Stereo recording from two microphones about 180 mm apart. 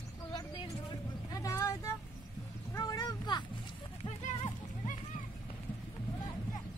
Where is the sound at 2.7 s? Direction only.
20° left (ahead or behind).